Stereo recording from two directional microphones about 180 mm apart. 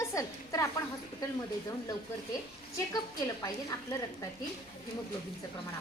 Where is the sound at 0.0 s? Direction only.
15° left (ahead or behind).